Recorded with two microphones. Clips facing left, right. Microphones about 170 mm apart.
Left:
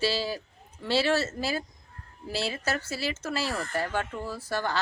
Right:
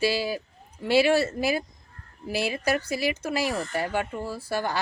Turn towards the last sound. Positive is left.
turn(degrees=-10)  # may be behind; listen again after turning